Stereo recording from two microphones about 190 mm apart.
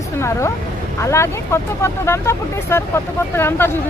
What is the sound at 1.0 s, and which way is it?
Speech, 15° left (ahead or behind).